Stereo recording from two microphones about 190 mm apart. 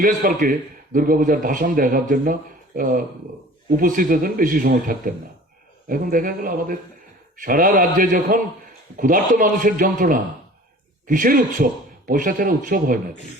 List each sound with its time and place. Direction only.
0.0 s a man's voice: 45° right (ahead or behind)